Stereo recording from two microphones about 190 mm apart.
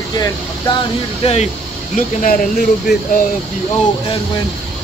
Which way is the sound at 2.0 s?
45° left (ahead or behind).